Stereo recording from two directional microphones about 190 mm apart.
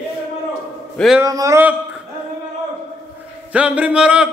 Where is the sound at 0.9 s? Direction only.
Centre (ahead or behind).